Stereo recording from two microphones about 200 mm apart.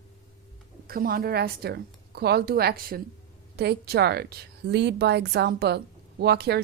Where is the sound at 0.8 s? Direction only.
50° right (ahead or behind).